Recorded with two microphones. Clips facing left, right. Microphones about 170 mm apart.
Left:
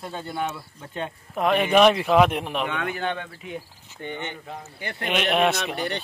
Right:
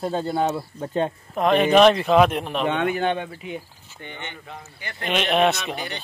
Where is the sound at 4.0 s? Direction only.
35° left (ahead or behind).